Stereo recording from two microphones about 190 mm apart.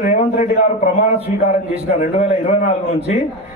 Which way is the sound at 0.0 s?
40° left (ahead or behind).